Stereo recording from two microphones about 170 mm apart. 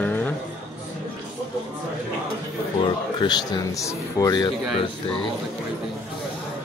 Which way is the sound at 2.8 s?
25° left (ahead or behind).